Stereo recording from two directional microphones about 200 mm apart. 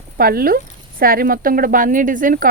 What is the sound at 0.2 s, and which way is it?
Speech, 50° right (ahead or behind).